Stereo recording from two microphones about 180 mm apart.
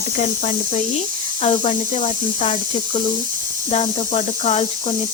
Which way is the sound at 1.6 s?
45° left (ahead or behind).